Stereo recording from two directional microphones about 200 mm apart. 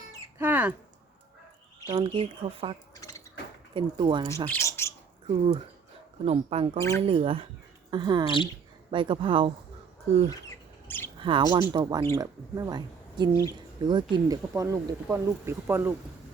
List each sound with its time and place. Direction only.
0.3 s a sound: 10° right (ahead or behind)
1.9 s speech: 25° right (ahead or behind)
2.9 s dishes: 15° left (ahead or behind)
3.8 s speech: 25° right (ahead or behind)
4.4 s a sound: 15° left (ahead or behind)
6.2 s speech: 30° right (ahead or behind)
6.7 s speech: 15° left (ahead or behind)
7.0 s speech: 30° right (ahead or behind)
10.8 s a sound: 10° left (ahead or behind)
11.2 s speech: 25° right (ahead or behind)